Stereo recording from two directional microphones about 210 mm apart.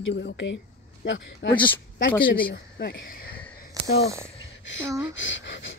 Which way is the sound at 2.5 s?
45° left (ahead or behind).